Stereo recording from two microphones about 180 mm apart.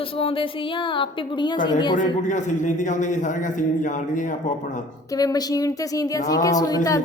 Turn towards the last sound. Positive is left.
turn(degrees=20)  # may be behind; listen again after turning